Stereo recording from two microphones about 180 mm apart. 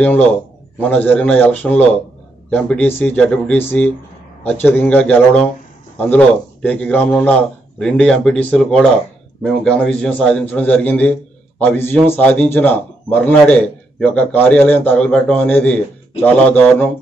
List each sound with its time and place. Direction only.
0.0 s a man's voice: 10° left (ahead or behind)